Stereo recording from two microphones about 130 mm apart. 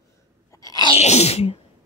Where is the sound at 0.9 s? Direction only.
55° left (ahead or behind).